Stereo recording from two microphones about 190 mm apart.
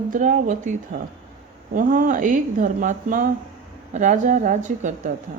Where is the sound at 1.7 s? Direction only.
45° right (ahead or behind).